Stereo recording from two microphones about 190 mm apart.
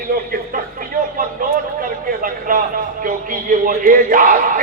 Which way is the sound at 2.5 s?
45° right (ahead or behind).